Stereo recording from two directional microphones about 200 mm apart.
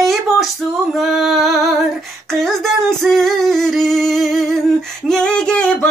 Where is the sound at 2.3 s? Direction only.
Centre (ahead or behind).